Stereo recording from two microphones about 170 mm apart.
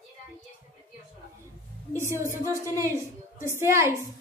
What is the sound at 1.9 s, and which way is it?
A woman's voice, 15° right (ahead or behind).